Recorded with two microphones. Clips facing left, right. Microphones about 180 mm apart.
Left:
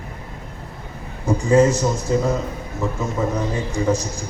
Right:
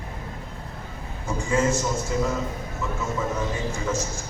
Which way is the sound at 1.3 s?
35° left (ahead or behind).